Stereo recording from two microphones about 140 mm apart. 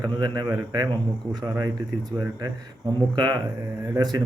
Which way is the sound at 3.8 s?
25° right (ahead or behind).